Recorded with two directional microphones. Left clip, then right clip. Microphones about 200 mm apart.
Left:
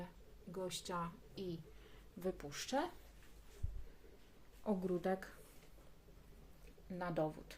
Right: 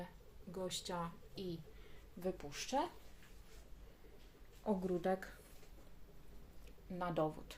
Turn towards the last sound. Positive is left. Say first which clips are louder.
# right 1 dB
turn(degrees=0)  # may be behind; listen again after turning